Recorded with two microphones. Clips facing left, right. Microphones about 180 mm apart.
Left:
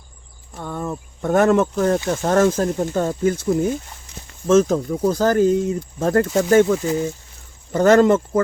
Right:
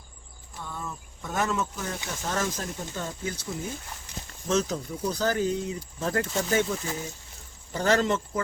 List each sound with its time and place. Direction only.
0.5 s speech: 55° left (ahead or behind)